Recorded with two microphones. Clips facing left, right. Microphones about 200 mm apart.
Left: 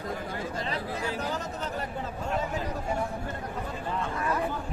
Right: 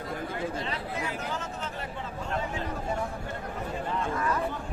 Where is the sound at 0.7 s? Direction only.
35° left (ahead or behind).